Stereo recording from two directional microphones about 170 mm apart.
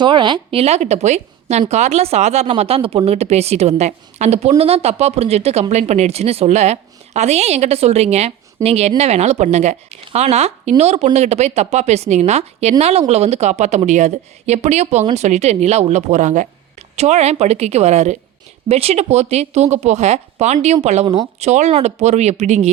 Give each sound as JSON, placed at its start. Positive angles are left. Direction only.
{"t": 0.0, "sound": "a woman's voice", "side_deg": -25}